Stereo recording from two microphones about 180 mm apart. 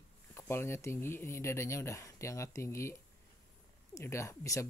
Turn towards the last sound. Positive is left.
turn(degrees=15)  # may be behind; listen again after turning